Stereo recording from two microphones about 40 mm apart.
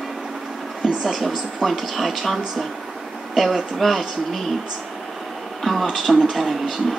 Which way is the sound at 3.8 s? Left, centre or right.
Centre.